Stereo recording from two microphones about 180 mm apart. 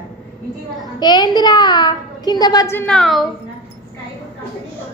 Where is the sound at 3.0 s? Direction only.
Centre (ahead or behind).